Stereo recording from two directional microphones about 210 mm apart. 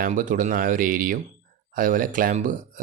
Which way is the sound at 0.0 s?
40° right (ahead or behind).